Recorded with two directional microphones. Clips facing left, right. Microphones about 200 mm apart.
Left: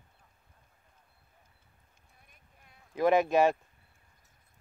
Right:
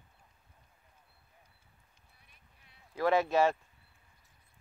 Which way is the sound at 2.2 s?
50° left (ahead or behind).